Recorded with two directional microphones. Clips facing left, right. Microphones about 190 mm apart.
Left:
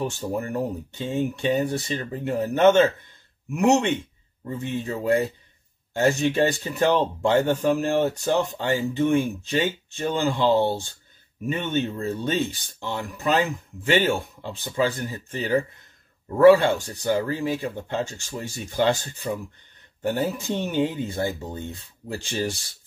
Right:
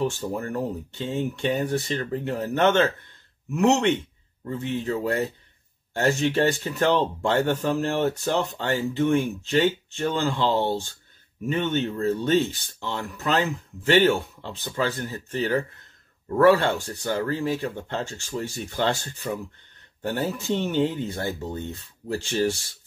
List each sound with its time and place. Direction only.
0.0 s speech: 15° left (ahead or behind)